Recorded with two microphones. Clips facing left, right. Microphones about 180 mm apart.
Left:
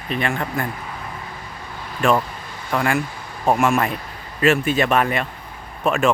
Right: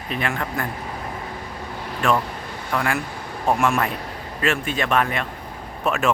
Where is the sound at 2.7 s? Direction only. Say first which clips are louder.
Left 3 dB; centre (ahead or behind).